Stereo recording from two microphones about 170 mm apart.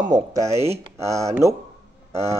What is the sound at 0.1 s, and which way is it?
A man's voice, 20° right (ahead or behind).